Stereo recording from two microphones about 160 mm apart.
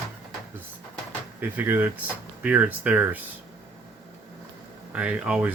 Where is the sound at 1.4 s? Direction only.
10° right (ahead or behind).